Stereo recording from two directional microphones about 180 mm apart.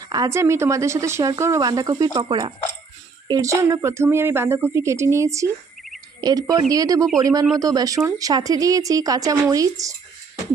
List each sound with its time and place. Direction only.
0.1 s speech: 15° right (ahead or behind)